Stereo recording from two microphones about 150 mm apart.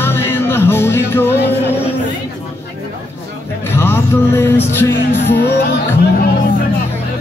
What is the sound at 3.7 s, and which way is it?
Music, 15° left (ahead or behind).